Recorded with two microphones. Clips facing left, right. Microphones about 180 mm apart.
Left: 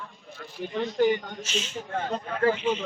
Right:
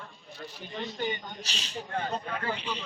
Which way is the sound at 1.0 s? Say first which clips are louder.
Left 12 dB; 80° left.